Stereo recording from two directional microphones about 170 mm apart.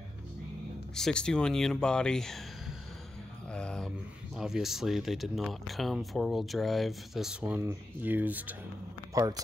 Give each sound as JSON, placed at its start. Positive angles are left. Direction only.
{"t": 0.9, "sound": "speech", "side_deg": 5}
{"t": 3.5, "sound": "a sound", "side_deg": 5}
{"t": 4.4, "sound": "speech", "side_deg": 0}
{"t": 9.1, "sound": "speech", "side_deg": -20}